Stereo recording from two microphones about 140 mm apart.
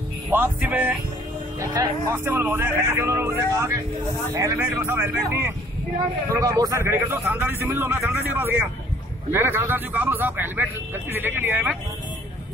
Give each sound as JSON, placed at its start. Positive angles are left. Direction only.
{"t": 0.3, "sound": "speech", "side_deg": -15}
{"t": 1.6, "sound": "speech", "side_deg": -25}
{"t": 6.3, "sound": "speech", "side_deg": -25}